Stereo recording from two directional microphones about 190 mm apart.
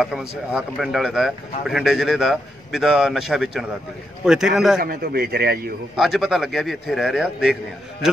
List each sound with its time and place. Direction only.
0.0 s a man's voice: 5° right (ahead or behind)
4.7 s a man's voice: 55° right (ahead or behind)
5.9 s a man's voice: centre (ahead or behind)